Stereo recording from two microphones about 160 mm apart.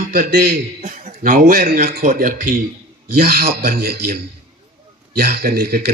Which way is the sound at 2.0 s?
60° right (ahead or behind).